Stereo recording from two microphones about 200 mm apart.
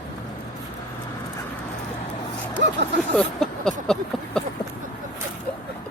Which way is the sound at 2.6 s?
60° right (ahead or behind).